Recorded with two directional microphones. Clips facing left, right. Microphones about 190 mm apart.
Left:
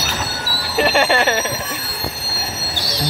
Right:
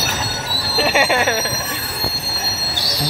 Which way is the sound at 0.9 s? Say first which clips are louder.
Right 1 dB; 5° right (ahead or behind).